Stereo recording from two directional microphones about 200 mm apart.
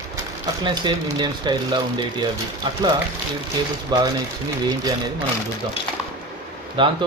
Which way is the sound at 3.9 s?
20° right (ahead or behind).